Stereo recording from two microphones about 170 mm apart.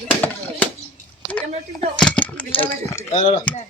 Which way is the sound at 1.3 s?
10° left (ahead or behind).